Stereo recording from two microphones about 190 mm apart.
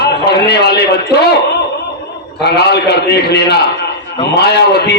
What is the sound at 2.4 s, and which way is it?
A man's voice, 60° left (ahead or behind).